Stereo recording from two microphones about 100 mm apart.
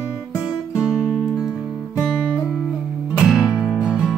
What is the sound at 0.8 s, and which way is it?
Music, 5° right (ahead or behind).